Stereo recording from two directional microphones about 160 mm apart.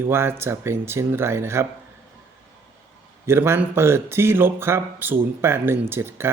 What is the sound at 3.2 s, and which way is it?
Speech, 15° right (ahead or behind).